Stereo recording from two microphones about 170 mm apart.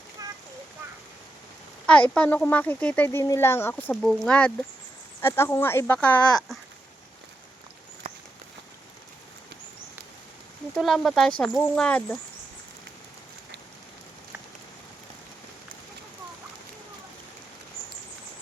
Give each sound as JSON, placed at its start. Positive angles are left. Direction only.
{"t": 0.2, "sound": "a sound", "side_deg": -20}
{"t": 1.9, "sound": "speech", "side_deg": 5}
{"t": 10.8, "sound": "speech", "side_deg": 0}